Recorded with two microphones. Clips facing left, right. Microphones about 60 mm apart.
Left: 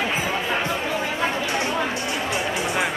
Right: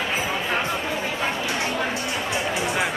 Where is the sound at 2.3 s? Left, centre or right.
Left.